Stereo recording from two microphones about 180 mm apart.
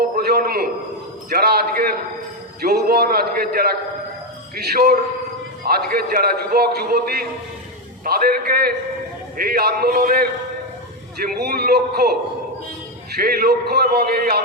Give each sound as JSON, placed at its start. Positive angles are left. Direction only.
{"t": 0.2, "sound": "a sound", "side_deg": -60}
{"t": 1.3, "sound": "a man's voice", "side_deg": -60}
{"t": 13.1, "sound": "a man's voice", "side_deg": -55}